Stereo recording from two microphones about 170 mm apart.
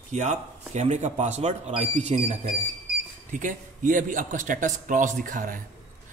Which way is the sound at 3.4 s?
50° right (ahead or behind).